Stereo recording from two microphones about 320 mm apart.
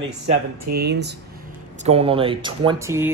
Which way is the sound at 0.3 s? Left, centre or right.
Right.